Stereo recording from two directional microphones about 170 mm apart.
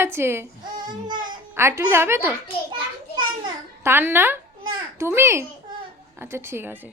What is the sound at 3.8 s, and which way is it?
A woman's voice, 10° right (ahead or behind).